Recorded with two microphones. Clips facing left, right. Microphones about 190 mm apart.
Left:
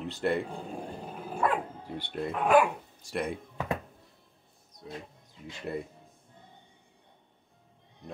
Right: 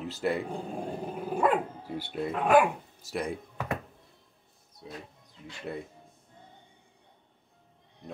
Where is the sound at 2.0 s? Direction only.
5° right (ahead or behind).